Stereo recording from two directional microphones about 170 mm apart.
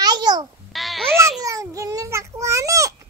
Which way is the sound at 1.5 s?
20° right (ahead or behind).